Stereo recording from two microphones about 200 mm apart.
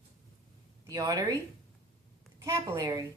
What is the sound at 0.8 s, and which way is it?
Speech, 20° right (ahead or behind).